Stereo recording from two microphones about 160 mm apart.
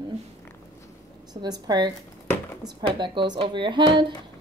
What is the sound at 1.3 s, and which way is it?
A woman's voice, 25° right (ahead or behind).